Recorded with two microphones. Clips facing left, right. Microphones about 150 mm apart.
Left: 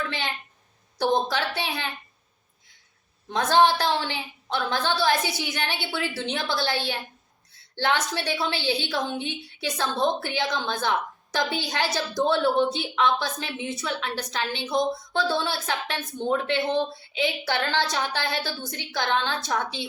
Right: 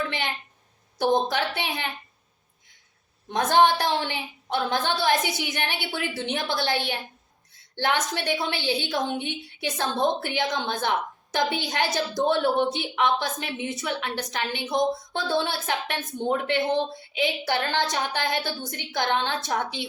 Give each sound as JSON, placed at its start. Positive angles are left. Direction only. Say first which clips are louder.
{"t": 0.9, "sound": "a woman's voice", "louder": "right 1 dB", "side_deg": -20}
{"t": 3.2, "sound": "a woman's voice", "louder": "even", "side_deg": -20}